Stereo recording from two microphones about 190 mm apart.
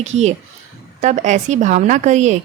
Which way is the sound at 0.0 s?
35° right (ahead or behind).